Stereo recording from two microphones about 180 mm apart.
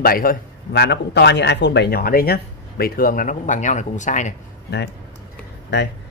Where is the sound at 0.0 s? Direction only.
55° left (ahead or behind).